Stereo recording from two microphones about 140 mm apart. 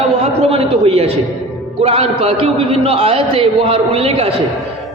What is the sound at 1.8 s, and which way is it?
A man's voice, 45° right (ahead or behind).